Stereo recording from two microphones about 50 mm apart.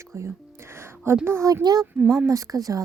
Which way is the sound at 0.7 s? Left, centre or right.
Right.